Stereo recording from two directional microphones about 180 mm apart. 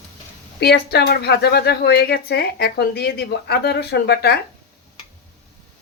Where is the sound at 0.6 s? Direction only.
60° left (ahead or behind).